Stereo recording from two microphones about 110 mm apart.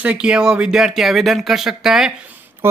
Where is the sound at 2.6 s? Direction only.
20° right (ahead or behind).